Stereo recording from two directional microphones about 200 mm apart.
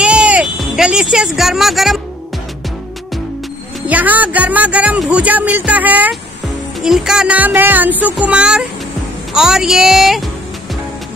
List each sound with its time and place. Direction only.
0.0 s music: 5° right (ahead or behind)
3.8 s speech: 10° right (ahead or behind)
6.8 s music: 5° right (ahead or behind)
9.3 s speech: 5° right (ahead or behind)